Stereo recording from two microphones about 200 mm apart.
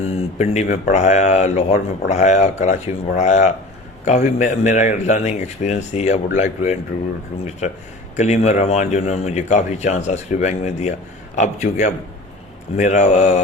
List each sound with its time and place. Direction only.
0.0 s speech: 35° left (ahead or behind)
8.1 s speech: 35° left (ahead or behind)